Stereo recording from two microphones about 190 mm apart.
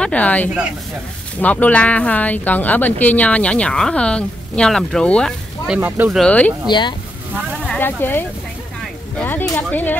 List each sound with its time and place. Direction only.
0.0 s speech: 10° left (ahead or behind)
5.8 s speech: 10° right (ahead or behind)
6.7 s speech: 25° left (ahead or behind)
7.6 s speech: 10° left (ahead or behind)
9.2 s speech: 10° left (ahead or behind)